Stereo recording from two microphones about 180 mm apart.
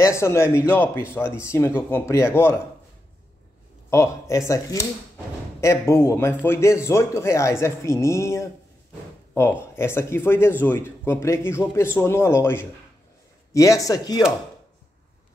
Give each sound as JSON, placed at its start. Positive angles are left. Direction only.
{"t": 0.0, "sound": "a man's voice", "side_deg": 15}
{"t": 3.9, "sound": "a man's voice", "side_deg": 15}